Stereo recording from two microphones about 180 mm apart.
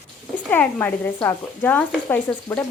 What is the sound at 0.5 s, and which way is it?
Speech, 10° left (ahead or behind).